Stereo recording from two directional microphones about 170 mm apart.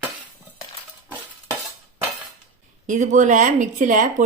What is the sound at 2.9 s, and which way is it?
Speech, 45° right (ahead or behind).